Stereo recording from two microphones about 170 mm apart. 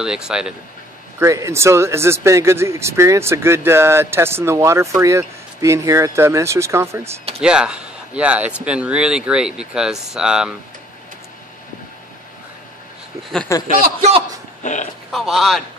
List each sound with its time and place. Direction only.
0.0 s speech: 5° right (ahead or behind)
1.2 s speech: 15° right (ahead or behind)
7.4 s speech: 5° right (ahead or behind)
13.5 s a man's voice: 15° left (ahead or behind)
14.6 s speech: 45° left (ahead or behind)
15.0 s speech: centre (ahead or behind)